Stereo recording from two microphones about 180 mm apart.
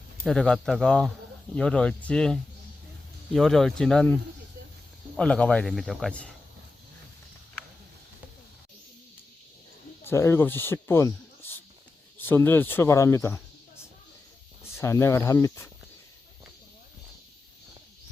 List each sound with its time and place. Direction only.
0.3 s speech: 5° left (ahead or behind)
10.1 s speech: 15° left (ahead or behind)
14.8 s speech: 15° left (ahead or behind)